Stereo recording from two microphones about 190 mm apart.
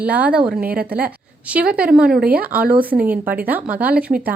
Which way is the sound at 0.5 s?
55° right (ahead or behind).